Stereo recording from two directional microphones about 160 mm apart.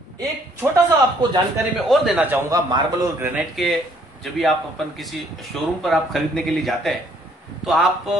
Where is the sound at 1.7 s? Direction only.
Centre (ahead or behind).